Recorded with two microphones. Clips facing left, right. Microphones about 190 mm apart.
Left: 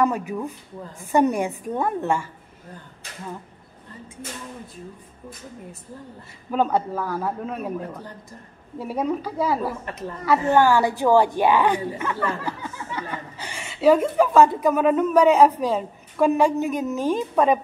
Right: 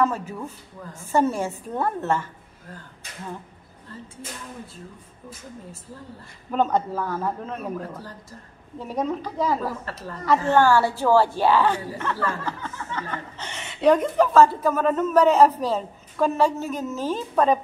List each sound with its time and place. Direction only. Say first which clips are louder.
0.0 s a woman's voice: left 2 dB; 15° left (ahead or behind)
6.5 s a woman's voice: left 1 dB; 10° left (ahead or behind)
8.7 s a woman's voice: left 2 dB; 10° left (ahead or behind)